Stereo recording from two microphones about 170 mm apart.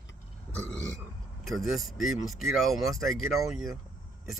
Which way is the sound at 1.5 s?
Centre (ahead or behind).